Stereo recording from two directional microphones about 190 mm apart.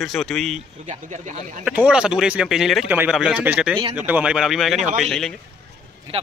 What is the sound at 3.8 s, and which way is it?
Speech, 30° right (ahead or behind).